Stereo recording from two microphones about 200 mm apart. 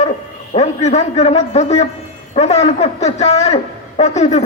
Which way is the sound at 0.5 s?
35° left (ahead or behind).